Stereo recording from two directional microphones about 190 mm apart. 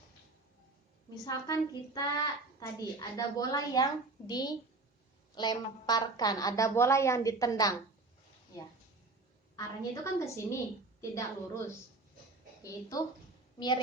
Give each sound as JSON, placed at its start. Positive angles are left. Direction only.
{"t": 1.2, "sound": "a woman's voice", "side_deg": 20}
{"t": 9.6, "sound": "a woman's voice", "side_deg": 15}